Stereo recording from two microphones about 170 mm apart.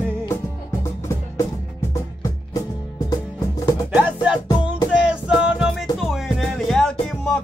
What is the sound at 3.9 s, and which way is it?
Music, 5° right (ahead or behind).